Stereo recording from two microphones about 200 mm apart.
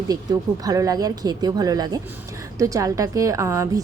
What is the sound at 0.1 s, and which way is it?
A woman's voice, 20° right (ahead or behind).